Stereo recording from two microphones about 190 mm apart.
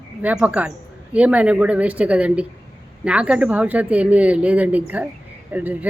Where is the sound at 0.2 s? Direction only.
10° right (ahead or behind).